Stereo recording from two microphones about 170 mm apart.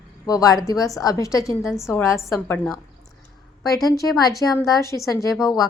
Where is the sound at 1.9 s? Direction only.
15° left (ahead or behind).